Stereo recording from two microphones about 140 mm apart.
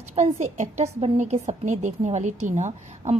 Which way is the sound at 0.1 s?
55° right (ahead or behind).